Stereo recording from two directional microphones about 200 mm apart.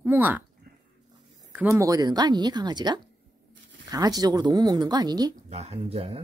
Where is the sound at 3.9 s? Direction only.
20° right (ahead or behind).